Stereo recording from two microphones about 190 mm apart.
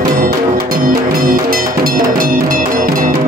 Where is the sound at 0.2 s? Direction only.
50° right (ahead or behind).